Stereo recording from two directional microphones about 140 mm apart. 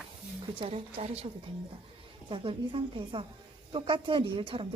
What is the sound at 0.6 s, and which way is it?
A woman's voice, 50° right (ahead or behind).